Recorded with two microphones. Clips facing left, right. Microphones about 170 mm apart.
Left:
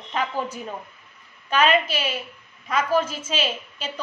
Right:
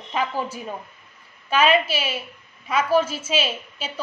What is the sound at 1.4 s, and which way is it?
A woman's voice, 10° right (ahead or behind).